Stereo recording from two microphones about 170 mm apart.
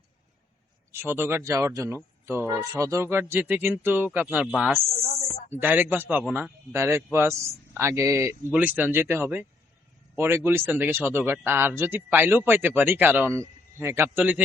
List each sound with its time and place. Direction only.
0.9 s speech: 15° right (ahead or behind)